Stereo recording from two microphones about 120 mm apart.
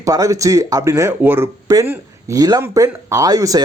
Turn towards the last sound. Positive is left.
turn(degrees=-30)  # may be behind; listen again after turning